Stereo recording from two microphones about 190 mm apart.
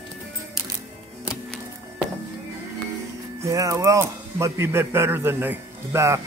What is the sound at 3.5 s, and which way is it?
A man's voice, 15° right (ahead or behind).